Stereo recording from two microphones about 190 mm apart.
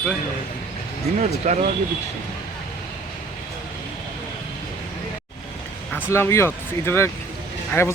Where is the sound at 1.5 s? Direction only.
40° right (ahead or behind).